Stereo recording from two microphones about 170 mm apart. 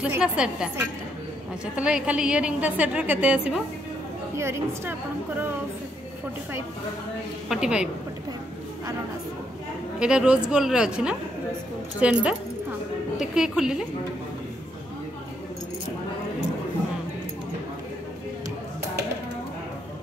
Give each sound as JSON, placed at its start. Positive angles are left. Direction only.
{"t": 0.0, "sound": "a woman's voice", "side_deg": -5}
{"t": 7.4, "sound": "a woman's voice", "side_deg": -5}
{"t": 9.9, "sound": "a woman's voice", "side_deg": -5}